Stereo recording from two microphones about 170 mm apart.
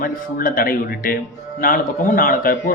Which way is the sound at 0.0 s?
55° left (ahead or behind).